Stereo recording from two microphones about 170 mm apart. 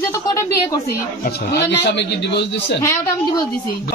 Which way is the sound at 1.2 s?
80° left.